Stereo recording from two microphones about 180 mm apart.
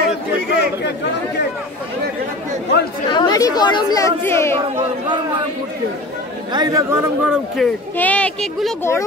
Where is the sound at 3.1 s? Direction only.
25° left (ahead or behind).